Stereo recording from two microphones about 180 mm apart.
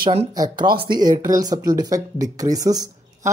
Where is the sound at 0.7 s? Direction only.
55° right (ahead or behind).